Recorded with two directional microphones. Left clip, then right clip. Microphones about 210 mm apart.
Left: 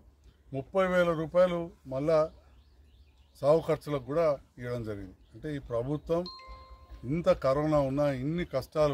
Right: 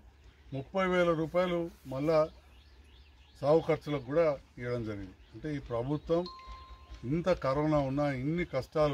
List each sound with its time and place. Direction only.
0.5 s speech: 15° left (ahead or behind)
3.3 s speech: 15° left (ahead or behind)